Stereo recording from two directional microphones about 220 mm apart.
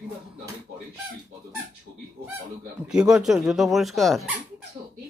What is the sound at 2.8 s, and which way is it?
Speech, 5° right (ahead or behind).